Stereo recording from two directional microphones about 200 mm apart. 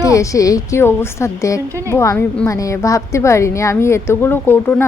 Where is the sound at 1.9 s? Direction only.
15° left (ahead or behind).